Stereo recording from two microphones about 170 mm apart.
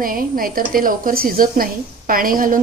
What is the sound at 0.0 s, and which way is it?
A woman's voice, 55° right (ahead or behind).